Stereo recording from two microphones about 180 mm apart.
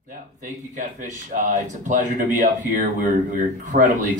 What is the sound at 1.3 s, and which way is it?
Speech, 45° right (ahead or behind).